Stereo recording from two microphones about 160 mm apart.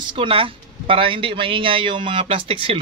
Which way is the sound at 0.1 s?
35° right (ahead or behind).